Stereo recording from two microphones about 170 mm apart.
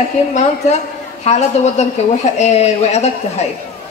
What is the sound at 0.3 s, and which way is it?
A woman's voice, 40° left (ahead or behind).